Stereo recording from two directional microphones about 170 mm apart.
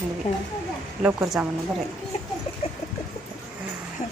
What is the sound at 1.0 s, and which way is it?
Speech, 10° right (ahead or behind).